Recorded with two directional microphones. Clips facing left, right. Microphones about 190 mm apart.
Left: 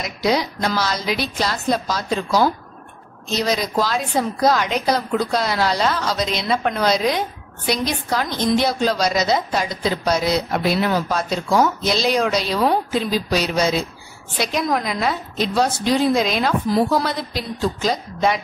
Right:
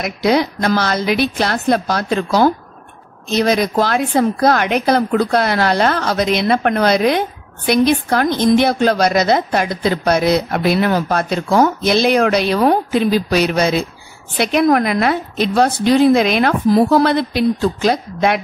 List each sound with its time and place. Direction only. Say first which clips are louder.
0.0 s a woman's voice: right 5 dB; 60° right (ahead or behind)